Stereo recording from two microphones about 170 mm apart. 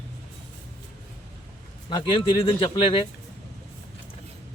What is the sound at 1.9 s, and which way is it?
Speech, 30° left (ahead or behind).